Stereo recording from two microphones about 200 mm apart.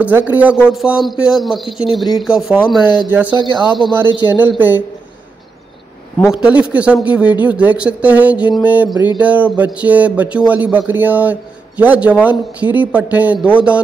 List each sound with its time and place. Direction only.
0.0 s a man's voice: 10° right (ahead or behind)
3.3 s speech: 25° left (ahead or behind)
4.3 s a man's voice: 10° right (ahead or behind)
6.3 s a man's voice: 5° right (ahead or behind)